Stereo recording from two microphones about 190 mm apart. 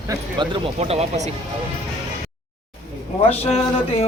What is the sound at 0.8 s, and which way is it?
Speech, 35° right (ahead or behind).